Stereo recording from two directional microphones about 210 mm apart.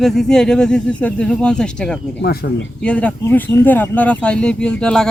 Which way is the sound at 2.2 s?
45° left (ahead or behind).